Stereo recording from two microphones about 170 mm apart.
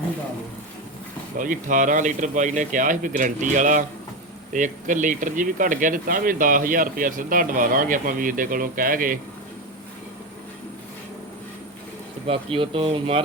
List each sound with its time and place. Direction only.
1.4 s speech: 50° right (ahead or behind)
12.3 s speech: 30° right (ahead or behind)